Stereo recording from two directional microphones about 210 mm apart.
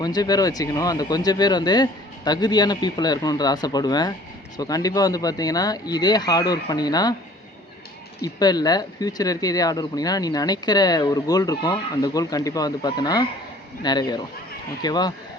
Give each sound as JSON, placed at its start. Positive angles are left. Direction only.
{"t": 0.0, "sound": "speech", "side_deg": 20}
{"t": 8.2, "sound": "speech", "side_deg": 20}